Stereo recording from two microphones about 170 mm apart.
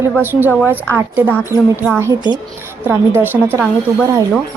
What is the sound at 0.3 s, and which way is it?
A woman's voice, 10° right (ahead or behind).